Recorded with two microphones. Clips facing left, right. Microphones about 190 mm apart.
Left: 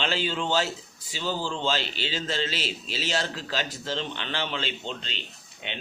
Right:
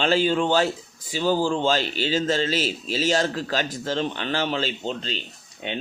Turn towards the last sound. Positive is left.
turn(degrees=-40)  # may be behind; listen again after turning